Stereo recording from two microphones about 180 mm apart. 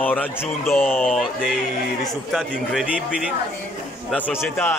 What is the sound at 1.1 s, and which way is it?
A man's voice, centre (ahead or behind).